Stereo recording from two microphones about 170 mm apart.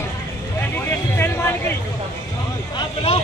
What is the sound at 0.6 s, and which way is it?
Vehicle, 10° left (ahead or behind).